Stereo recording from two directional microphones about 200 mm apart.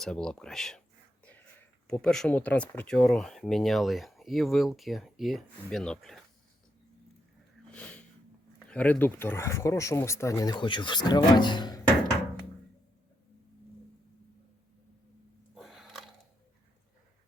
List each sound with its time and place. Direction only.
0.0 s speech: 5° left (ahead or behind)
1.2 s a sound: 5° left (ahead or behind)
1.9 s speech: 5° left (ahead or behind)
7.7 s snort: 5° left (ahead or behind)
8.5 s speech: 5° left (ahead or behind)
15.5 s a sound: centre (ahead or behind)